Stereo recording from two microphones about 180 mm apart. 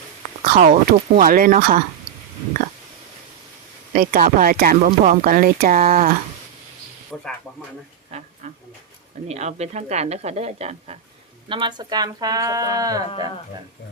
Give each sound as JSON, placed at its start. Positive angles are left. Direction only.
{"t": 0.6, "sound": "speech", "side_deg": -45}
{"t": 3.9, "sound": "speech", "side_deg": -50}
{"t": 7.1, "sound": "speech", "side_deg": 5}
{"t": 8.1, "sound": "a woman's voice", "side_deg": -35}
{"t": 13.1, "sound": "speech", "side_deg": 30}